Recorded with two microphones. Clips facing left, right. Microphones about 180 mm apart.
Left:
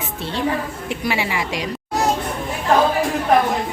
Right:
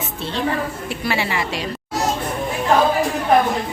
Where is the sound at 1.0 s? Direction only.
15° left (ahead or behind).